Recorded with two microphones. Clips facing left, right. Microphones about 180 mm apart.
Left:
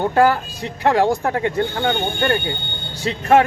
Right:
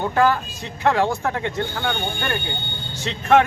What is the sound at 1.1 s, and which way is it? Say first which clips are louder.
Speech: left 4 dB; 35° left (ahead or behind).